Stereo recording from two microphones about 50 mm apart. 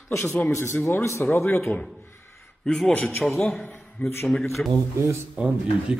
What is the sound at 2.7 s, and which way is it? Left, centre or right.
Speech, centre.